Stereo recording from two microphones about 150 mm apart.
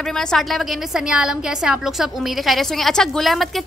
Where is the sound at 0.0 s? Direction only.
5° left (ahead or behind).